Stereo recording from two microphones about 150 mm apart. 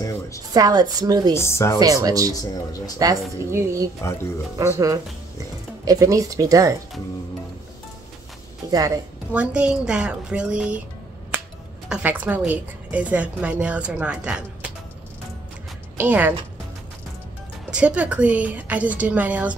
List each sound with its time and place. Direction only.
0.5 s a woman's voice: 25° right (ahead or behind)
1.3 s speech: 20° left (ahead or behind)
1.8 s a woman's voice: 25° right (ahead or behind)
8.6 s a woman's voice: 25° right (ahead or behind)
9.3 s a woman's voice: 10° right (ahead or behind)
11.9 s a woman's voice: 10° right (ahead or behind)
16.0 s a woman's voice: 10° right (ahead or behind)
17.6 s a woman's voice: 5° right (ahead or behind)